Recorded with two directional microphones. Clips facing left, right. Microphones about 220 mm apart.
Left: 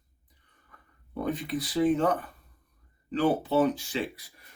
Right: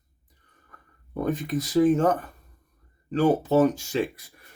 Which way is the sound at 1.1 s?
45° right (ahead or behind).